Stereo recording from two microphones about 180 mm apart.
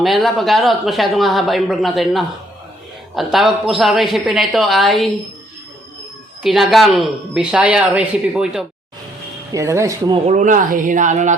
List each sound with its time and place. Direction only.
0.0 s speech: centre (ahead or behind)
6.4 s speech: centre (ahead or behind)
9.5 s speech: 15° right (ahead or behind)
10.2 s speech: 45° right (ahead or behind)